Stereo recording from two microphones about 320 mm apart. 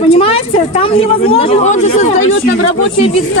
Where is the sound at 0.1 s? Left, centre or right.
Centre.